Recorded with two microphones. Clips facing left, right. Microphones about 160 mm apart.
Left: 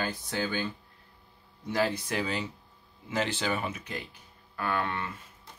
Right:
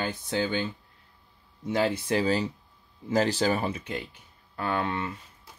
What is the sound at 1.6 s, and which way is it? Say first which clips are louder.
Speech: right 3 dB; 25° right (ahead or behind).